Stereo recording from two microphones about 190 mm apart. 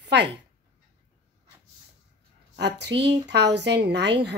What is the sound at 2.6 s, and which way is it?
A woman's voice, 65° right (ahead or behind).